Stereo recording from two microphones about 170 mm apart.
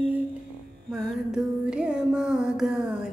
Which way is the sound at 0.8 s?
5° right (ahead or behind).